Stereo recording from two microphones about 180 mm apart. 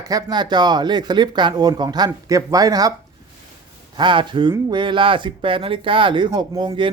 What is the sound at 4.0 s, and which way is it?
A man's voice, 25° right (ahead or behind).